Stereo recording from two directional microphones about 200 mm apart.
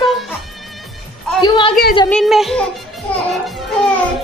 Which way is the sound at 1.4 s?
25° left (ahead or behind).